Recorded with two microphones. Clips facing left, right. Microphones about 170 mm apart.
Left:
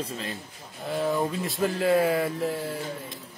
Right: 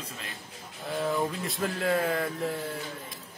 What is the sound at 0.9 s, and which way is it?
Speech, centre (ahead or behind).